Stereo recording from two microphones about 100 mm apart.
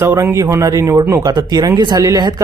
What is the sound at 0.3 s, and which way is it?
Speech, 30° right (ahead or behind).